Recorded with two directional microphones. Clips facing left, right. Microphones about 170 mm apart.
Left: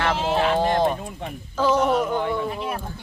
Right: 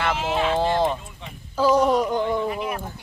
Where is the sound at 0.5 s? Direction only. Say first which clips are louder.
Right 2 dB; 15° left (ahead or behind).